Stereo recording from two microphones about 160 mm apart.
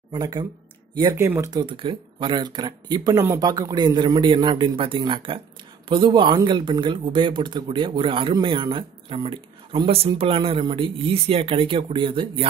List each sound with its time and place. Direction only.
0.1 s speech: 25° right (ahead or behind)
1.2 s speech: 15° right (ahead or behind)
1.5 s speech: 30° right (ahead or behind)